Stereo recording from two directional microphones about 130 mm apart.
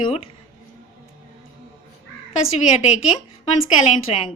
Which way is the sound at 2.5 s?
60° left (ahead or behind).